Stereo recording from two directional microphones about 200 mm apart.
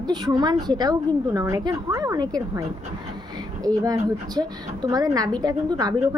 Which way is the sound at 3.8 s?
20° right (ahead or behind).